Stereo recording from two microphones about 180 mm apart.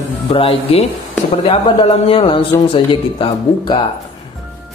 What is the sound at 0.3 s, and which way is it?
A man's voice, 30° left (ahead or behind).